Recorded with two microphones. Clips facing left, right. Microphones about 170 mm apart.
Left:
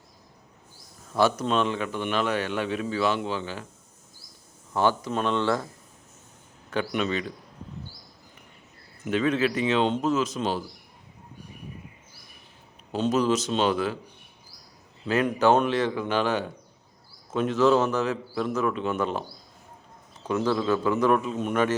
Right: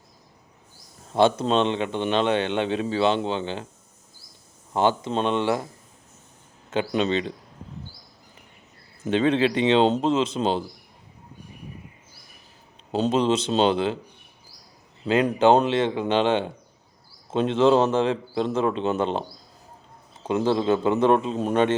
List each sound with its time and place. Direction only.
1.1 s a man's voice: 25° right (ahead or behind)
4.7 s a man's voice: 20° right (ahead or behind)
6.7 s a man's voice: 25° right (ahead or behind)
9.0 s a man's voice: 30° right (ahead or behind)
12.9 s a man's voice: 25° right (ahead or behind)
15.0 s a man's voice: 25° right (ahead or behind)
20.2 s a man's voice: 25° right (ahead or behind)